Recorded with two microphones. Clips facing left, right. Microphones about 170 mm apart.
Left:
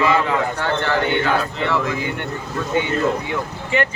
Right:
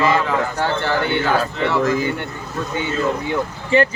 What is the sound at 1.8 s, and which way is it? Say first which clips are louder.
Speech: right 5 dB; 40° right (ahead or behind).